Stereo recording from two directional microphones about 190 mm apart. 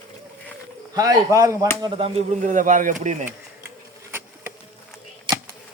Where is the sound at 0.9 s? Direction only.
20° right (ahead or behind).